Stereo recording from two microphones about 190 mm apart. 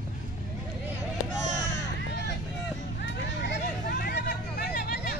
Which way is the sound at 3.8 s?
50° left (ahead or behind).